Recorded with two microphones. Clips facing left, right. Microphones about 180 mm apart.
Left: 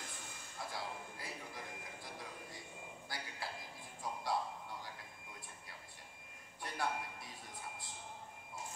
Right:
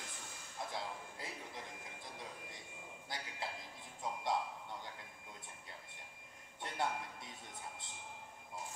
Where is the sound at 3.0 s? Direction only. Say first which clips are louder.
Right 2 dB; 20° right (ahead or behind).